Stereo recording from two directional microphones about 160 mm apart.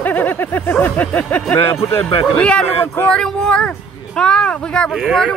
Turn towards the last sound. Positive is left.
turn(degrees=0)  # may be behind; listen again after turning